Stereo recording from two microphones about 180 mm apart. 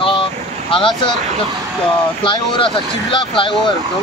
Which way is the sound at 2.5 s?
25° left (ahead or behind).